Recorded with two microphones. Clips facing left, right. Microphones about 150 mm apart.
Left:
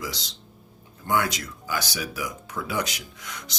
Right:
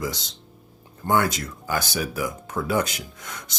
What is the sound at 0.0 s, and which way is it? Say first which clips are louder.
Speech: right 5 dB; 50° right (ahead or behind).